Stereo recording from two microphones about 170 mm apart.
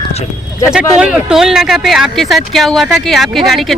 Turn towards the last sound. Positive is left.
turn(degrees=0)  # may be behind; listen again after turning